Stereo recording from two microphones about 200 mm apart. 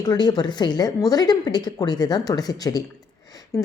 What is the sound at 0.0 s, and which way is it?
A woman's voice, 20° left (ahead or behind).